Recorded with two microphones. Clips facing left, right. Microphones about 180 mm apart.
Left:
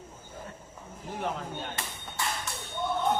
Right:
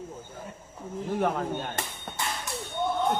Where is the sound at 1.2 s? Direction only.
55° right (ahead or behind).